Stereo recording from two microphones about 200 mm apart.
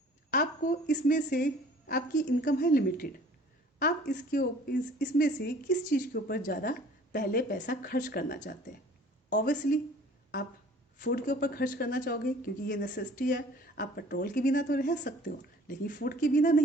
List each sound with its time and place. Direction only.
0.3 s a woman's voice: 40° left (ahead or behind)
11.0 s speech: 45° left (ahead or behind)